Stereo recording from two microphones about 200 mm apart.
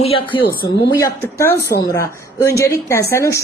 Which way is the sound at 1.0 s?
10° left (ahead or behind).